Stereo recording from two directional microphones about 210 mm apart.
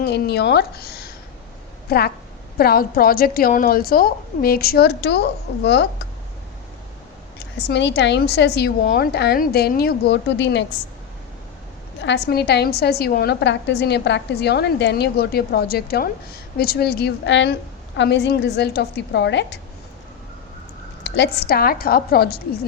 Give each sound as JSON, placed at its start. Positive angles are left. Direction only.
{"t": 0.0, "sound": "a woman's voice", "side_deg": 50}
{"t": 7.7, "sound": "a woman's voice", "side_deg": 55}
{"t": 12.0, "sound": "a woman's voice", "side_deg": 50}
{"t": 21.0, "sound": "a woman's voice", "side_deg": 50}